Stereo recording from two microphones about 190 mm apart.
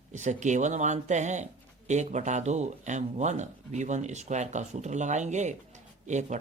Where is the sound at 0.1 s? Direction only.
40° right (ahead or behind).